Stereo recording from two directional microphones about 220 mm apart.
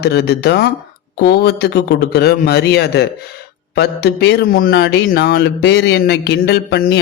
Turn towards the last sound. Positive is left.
turn(degrees=50)  # may be behind; listen again after turning